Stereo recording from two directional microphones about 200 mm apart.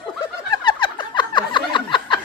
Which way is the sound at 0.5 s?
25° left (ahead or behind).